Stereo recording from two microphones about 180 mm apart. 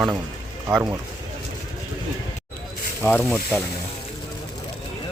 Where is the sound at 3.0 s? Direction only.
10° left (ahead or behind).